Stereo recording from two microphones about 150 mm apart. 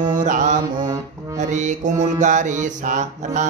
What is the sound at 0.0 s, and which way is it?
Music, 60° right (ahead or behind).